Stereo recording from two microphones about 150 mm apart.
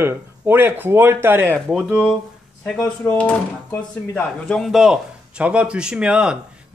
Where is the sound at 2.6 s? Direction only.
10° left (ahead or behind); by 6.3 s 5° right (ahead or behind).